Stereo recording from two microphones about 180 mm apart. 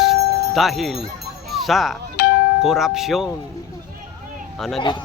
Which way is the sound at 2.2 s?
65° left (ahead or behind).